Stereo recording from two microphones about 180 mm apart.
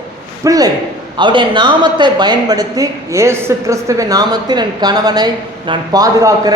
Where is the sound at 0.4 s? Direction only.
20° right (ahead or behind).